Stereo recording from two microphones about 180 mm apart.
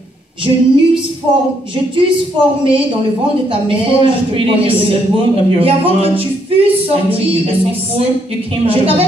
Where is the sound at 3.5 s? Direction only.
30° right (ahead or behind).